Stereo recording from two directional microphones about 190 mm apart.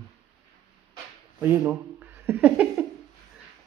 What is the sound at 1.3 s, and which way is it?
Speech, 10° right (ahead or behind).